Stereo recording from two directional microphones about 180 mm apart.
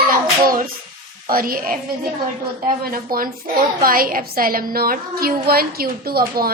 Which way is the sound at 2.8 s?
55° right (ahead or behind).